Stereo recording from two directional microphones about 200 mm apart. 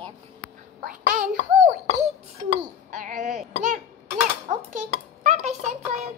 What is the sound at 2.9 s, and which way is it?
Speech, 40° right (ahead or behind).